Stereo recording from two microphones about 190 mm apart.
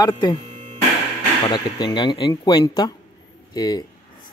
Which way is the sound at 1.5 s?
25° left (ahead or behind).